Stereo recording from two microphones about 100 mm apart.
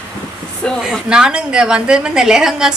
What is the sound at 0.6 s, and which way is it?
Speech, 10° left (ahead or behind).